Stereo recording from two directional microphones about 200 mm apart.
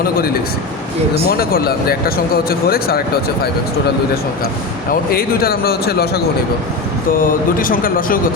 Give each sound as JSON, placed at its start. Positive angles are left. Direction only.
{"t": 1.3, "sound": "speech", "side_deg": 50}
{"t": 4.9, "sound": "speech", "side_deg": 50}